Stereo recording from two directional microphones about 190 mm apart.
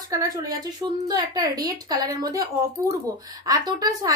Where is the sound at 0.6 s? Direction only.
20° right (ahead or behind).